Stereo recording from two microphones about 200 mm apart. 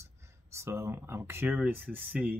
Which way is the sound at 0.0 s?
15° right (ahead or behind).